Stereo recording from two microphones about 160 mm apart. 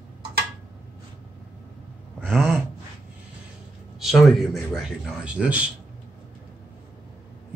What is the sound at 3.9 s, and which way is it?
A man's voice, centre (ahead or behind).